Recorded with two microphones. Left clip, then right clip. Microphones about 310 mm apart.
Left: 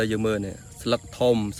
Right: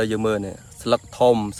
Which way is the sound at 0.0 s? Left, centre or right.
Centre.